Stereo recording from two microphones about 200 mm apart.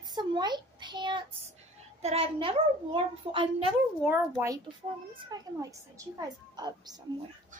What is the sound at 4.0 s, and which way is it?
A woman's voice, 10° right (ahead or behind).